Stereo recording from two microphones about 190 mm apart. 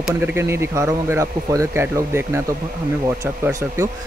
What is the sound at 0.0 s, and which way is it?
Speech, 10° right (ahead or behind).